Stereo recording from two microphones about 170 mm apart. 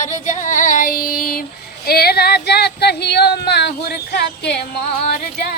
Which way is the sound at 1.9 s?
65° left (ahead or behind).